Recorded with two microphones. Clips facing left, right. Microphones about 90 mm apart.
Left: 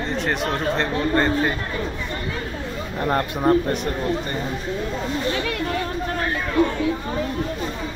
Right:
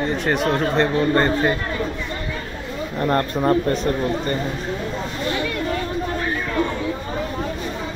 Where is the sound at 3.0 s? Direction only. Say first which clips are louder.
Right 1 dB; 10° left (ahead or behind).